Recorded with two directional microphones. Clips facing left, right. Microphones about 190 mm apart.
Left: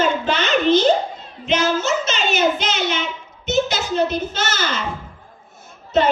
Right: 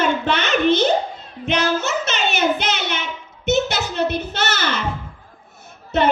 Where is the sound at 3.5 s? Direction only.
60° right (ahead or behind).